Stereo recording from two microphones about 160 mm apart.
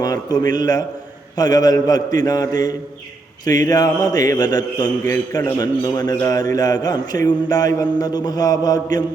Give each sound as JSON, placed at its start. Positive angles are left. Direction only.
{"t": 0.0, "sound": "a man's voice", "side_deg": 25}